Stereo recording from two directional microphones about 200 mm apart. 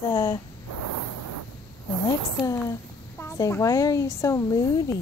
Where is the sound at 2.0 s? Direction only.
15° left (ahead or behind).